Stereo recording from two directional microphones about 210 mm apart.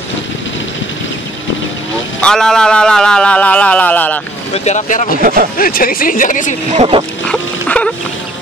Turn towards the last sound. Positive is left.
turn(degrees=5)  # may be behind; listen again after turning